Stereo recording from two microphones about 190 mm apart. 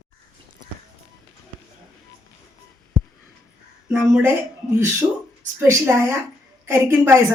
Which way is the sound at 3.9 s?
5° right (ahead or behind).